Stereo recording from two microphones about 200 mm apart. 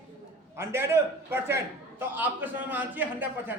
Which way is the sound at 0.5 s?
15° right (ahead or behind).